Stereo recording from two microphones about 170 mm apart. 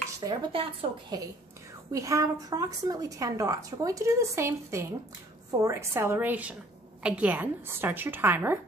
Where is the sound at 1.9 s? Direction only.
20° right (ahead or behind).